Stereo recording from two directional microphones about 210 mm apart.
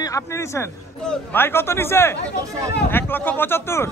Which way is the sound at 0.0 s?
15° left (ahead or behind).